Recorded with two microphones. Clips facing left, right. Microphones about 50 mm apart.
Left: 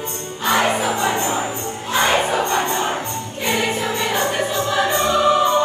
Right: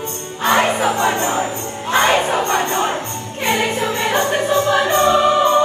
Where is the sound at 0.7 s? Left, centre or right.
Right.